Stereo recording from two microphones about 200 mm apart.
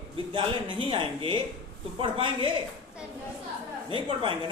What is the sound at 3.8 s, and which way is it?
Speech, 25° right (ahead or behind).